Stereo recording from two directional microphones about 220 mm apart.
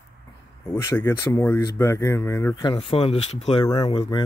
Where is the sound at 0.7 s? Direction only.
10° left (ahead or behind).